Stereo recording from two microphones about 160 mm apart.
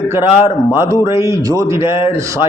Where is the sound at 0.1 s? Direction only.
15° right (ahead or behind).